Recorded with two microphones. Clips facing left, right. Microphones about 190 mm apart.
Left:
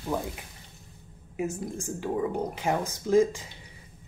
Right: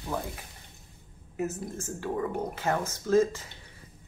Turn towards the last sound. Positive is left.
turn(degrees=15)  # may be behind; listen again after turning